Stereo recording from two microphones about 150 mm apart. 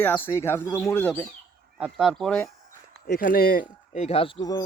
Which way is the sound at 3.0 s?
70° left (ahead or behind).